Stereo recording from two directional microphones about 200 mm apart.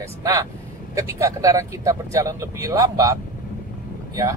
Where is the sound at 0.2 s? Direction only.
15° right (ahead or behind).